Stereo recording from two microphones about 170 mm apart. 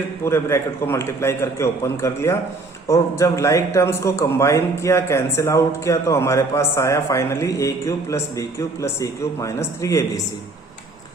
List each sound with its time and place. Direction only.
0.3 s a man's voice: 15° left (ahead or behind)